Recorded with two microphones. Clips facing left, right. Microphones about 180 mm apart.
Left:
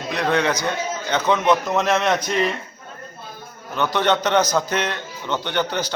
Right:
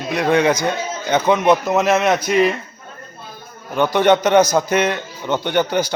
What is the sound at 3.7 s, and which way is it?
A man's voice, 10° right (ahead or behind).